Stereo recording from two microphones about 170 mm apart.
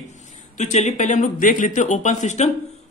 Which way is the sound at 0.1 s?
45° left (ahead or behind).